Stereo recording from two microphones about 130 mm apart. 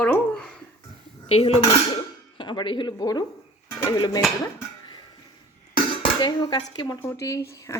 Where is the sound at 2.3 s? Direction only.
40° left (ahead or behind).